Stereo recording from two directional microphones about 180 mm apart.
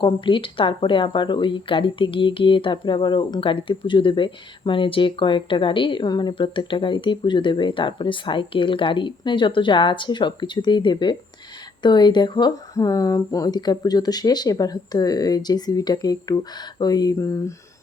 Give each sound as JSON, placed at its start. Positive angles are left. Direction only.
{"t": 0.0, "sound": "speech", "side_deg": 30}